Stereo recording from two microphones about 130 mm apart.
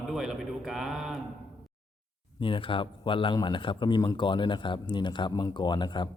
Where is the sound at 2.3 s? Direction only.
40° left (ahead or behind).